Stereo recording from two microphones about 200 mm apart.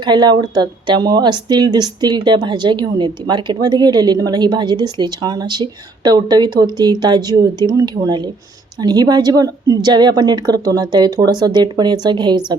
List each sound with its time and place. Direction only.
0.0 s speech: 20° right (ahead or behind)